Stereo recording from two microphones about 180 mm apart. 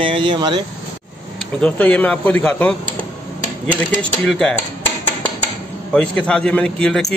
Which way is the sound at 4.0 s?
5° left (ahead or behind).